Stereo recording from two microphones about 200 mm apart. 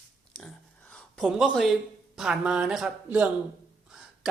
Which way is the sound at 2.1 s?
5° right (ahead or behind).